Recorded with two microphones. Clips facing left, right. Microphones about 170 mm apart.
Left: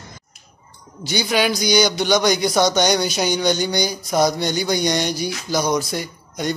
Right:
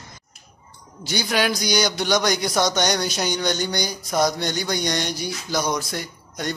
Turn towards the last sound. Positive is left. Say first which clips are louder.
# left 4 dB
turn(degrees=5)  # may be behind; listen again after turning